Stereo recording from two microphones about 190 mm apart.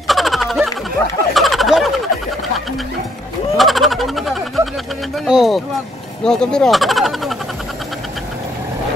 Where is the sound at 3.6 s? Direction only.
Centre (ahead or behind).